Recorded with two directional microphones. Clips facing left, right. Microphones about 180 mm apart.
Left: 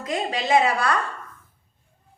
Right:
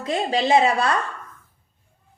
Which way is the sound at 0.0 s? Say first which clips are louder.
Right 4 dB; 30° right (ahead or behind).